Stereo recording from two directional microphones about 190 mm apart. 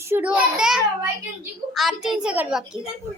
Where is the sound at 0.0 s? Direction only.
10° right (ahead or behind).